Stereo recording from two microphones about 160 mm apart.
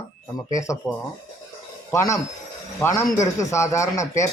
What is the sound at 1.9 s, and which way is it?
Speech, 20° left (ahead or behind).